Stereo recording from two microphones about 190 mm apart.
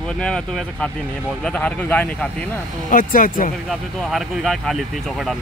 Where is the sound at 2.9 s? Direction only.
45° left (ahead or behind).